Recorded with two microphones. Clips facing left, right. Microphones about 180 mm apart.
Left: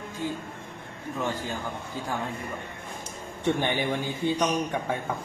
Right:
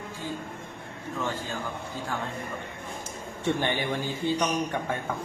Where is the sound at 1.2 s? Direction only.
15° left (ahead or behind).